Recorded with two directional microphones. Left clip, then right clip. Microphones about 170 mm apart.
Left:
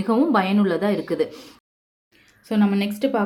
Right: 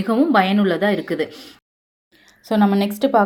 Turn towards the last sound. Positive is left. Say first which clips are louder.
# right 6 dB
turn(degrees=-30)  # may be behind; listen again after turning